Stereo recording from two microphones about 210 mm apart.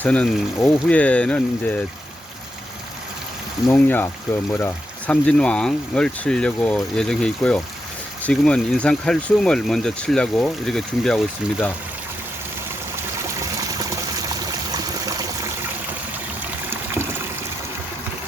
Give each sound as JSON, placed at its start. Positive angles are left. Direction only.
{"t": 0.0, "sound": "speech", "side_deg": 5}
{"t": 3.7, "sound": "speech", "side_deg": 10}
{"t": 13.4, "sound": "water", "side_deg": -15}
{"t": 14.4, "sound": "stream", "side_deg": -15}
{"t": 16.6, "sound": "trickle", "side_deg": -10}